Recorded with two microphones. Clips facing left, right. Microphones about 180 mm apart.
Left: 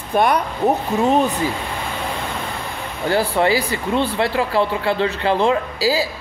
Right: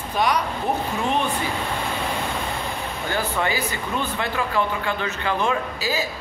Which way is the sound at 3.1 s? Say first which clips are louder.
Left 8 dB; 35° left (ahead or behind).